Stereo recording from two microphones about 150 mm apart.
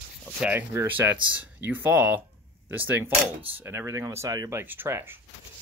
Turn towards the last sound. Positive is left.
turn(degrees=-15)  # may be behind; listen again after turning